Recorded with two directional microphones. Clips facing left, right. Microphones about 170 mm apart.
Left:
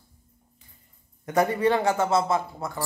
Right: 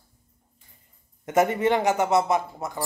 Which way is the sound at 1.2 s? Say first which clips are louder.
Right 1 dB; 20° right (ahead or behind).